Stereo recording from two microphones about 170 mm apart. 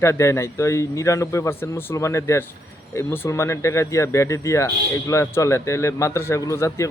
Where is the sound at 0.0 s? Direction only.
15° left (ahead or behind).